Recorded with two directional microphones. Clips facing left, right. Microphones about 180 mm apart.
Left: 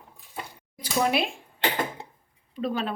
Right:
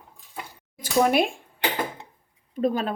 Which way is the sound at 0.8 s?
50° right (ahead or behind).